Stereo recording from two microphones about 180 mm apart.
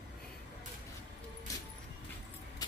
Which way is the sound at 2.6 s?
20° left (ahead or behind).